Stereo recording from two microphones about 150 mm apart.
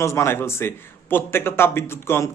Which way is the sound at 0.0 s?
20° left (ahead or behind).